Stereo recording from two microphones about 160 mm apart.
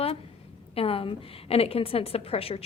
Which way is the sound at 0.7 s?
35° left (ahead or behind).